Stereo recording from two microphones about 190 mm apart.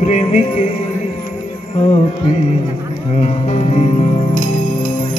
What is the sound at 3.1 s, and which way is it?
Music, 35° left (ahead or behind).